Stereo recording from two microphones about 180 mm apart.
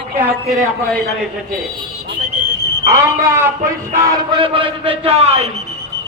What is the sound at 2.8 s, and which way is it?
Speech, 15° right (ahead or behind).